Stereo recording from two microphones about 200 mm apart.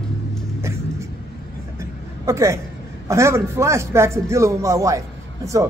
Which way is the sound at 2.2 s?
15° right (ahead or behind).